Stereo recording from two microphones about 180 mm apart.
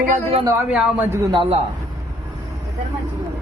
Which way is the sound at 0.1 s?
35° right (ahead or behind).